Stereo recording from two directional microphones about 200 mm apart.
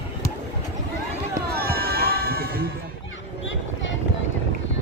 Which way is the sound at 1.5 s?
50° right (ahead or behind).